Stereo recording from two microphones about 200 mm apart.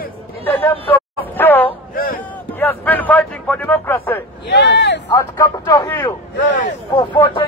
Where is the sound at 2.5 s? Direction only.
10° left (ahead or behind).